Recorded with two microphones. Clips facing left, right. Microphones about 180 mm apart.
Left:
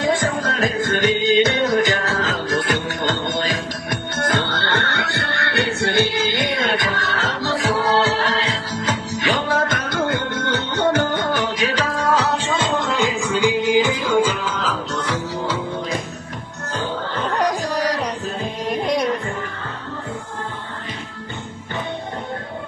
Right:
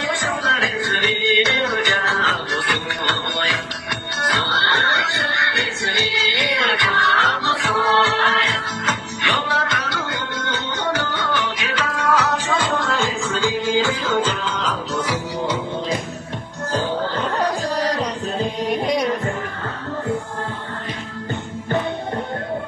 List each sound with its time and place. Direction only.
0.0 s music: 45° left (ahead or behind); by 15.1 s 5° right (ahead or behind)
17.4 s a sound: 10° left (ahead or behind)
18.6 s music: centre (ahead or behind)